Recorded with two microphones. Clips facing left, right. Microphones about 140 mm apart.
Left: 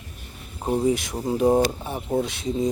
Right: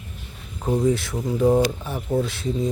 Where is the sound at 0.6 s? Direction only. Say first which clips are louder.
Right 1 dB; 30° left (ahead or behind).